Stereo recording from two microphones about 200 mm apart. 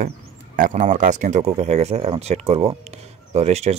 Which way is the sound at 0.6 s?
40° right (ahead or behind).